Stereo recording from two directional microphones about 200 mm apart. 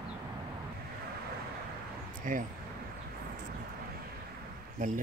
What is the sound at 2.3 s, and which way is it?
Speech, 40° right (ahead or behind).